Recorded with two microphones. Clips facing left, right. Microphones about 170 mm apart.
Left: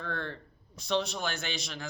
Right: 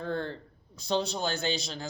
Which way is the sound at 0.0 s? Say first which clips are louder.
Right 4 dB; 30° right (ahead or behind).